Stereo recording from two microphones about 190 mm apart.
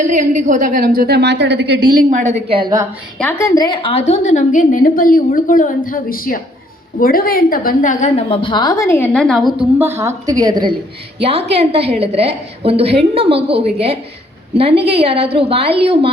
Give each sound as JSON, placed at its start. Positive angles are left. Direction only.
{"t": 0.0, "sound": "a woman's voice", "side_deg": -45}
{"t": 2.0, "sound": "a woman's voice", "side_deg": -35}
{"t": 2.6, "sound": "a woman's voice", "side_deg": -20}
{"t": 3.2, "sound": "a woman's voice", "side_deg": 10}
{"t": 9.7, "sound": "a woman's voice", "side_deg": -15}